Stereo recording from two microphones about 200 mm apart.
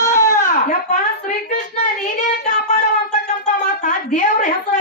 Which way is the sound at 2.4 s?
35° left (ahead or behind).